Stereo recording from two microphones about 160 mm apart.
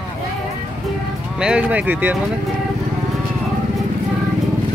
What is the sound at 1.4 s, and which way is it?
Speech, 10° right (ahead or behind).